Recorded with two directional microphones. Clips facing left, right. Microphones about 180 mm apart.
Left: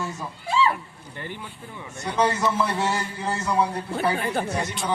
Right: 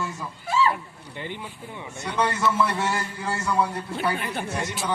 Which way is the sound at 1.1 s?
15° right (ahead or behind).